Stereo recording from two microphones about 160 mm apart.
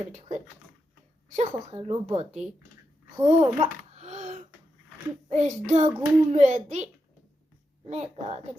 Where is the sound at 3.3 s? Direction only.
45° right (ahead or behind).